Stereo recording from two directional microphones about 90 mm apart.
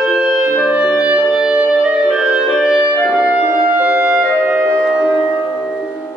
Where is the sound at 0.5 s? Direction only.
15° right (ahead or behind).